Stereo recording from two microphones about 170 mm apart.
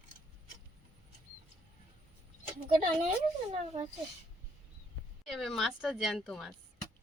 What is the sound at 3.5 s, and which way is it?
Speech, 40° right (ahead or behind).